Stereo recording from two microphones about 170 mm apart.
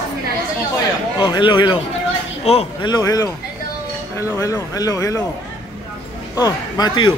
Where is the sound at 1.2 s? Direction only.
30° left (ahead or behind).